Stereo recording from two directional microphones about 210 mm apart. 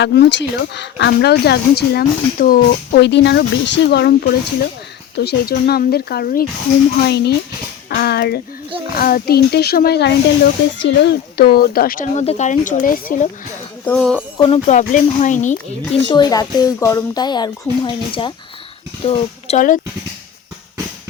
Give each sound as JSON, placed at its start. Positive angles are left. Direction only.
{"t": 0.0, "sound": "speech", "side_deg": 55}
{"t": 13.8, "sound": "speech", "side_deg": 5}
{"t": 14.3, "sound": "speech", "side_deg": 25}
{"t": 16.1, "sound": "speech", "side_deg": 20}